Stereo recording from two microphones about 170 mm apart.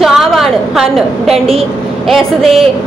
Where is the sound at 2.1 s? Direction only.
Centre (ahead or behind).